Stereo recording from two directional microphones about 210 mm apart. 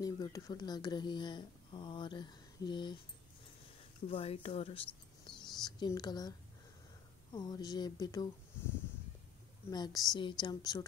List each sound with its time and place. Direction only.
0.0 s speech: 15° left (ahead or behind)
4.1 s speech: 25° left (ahead or behind)
7.3 s speech: 20° left (ahead or behind)
9.7 s speech: 20° left (ahead or behind)